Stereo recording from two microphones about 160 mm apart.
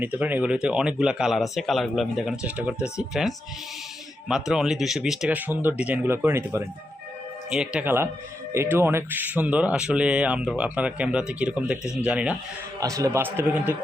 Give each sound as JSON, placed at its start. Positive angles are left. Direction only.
{"t": 0.0, "sound": "speech", "side_deg": -10}
{"t": 12.8, "sound": "a man's voice", "side_deg": -20}